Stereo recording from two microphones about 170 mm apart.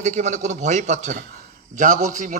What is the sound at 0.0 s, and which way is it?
A man's voice, 45° right (ahead or behind).